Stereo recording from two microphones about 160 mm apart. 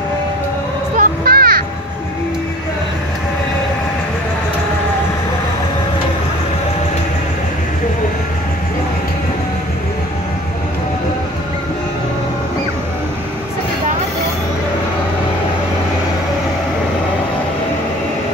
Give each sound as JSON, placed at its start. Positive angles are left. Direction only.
{"t": 0.9, "sound": "children playing", "side_deg": -65}